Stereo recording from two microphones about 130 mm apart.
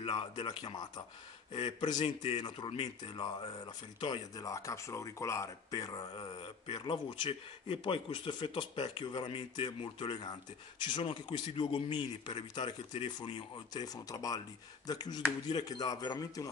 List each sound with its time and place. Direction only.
0.0 s speech: 40° left (ahead or behind)
4.5 s speech: 25° left (ahead or behind)
6.1 s speech: 40° left (ahead or behind)